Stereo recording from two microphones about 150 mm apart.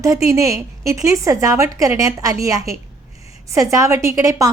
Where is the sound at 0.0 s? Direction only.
20° right (ahead or behind).